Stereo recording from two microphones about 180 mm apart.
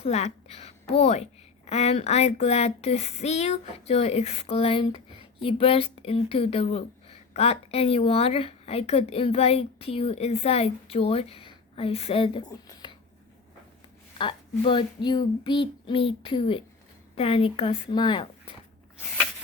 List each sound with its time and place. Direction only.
0.0 s a woman's voice: 35° left (ahead or behind)
14.2 s speech: 30° left (ahead or behind)